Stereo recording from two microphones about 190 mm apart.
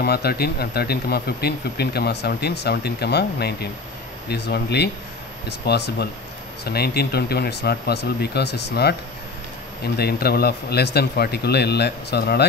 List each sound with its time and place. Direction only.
0.0 s speech: 55° left (ahead or behind)
9.9 s speech: 55° left (ahead or behind)